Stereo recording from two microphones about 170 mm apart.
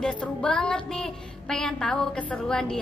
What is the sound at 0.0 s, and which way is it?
A woman's voice, 5° left (ahead or behind).